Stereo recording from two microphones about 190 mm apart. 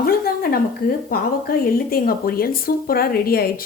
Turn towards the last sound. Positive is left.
turn(degrees=50)  # may be behind; listen again after turning